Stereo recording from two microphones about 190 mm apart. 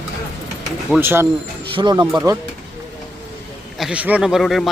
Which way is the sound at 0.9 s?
10° right (ahead or behind).